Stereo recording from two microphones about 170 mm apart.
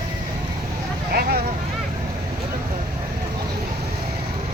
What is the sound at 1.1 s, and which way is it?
Vehicle, 65° right (ahead or behind).